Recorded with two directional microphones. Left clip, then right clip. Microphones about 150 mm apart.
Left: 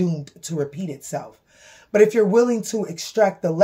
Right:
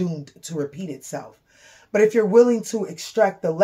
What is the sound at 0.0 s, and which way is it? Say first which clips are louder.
Speech: left 3 dB; 25° left (ahead or behind).